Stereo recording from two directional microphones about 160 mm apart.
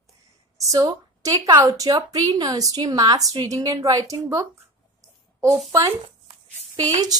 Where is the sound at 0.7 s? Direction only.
20° right (ahead or behind).